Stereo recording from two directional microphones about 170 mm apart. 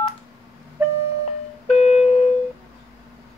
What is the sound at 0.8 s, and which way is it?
Music, 10° right (ahead or behind).